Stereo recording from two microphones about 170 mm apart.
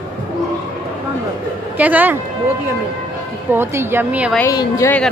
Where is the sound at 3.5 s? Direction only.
15° right (ahead or behind).